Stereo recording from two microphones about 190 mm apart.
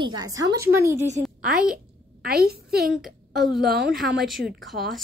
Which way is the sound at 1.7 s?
50° right (ahead or behind).